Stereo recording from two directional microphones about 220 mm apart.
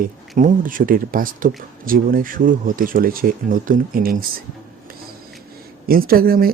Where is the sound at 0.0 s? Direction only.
35° right (ahead or behind).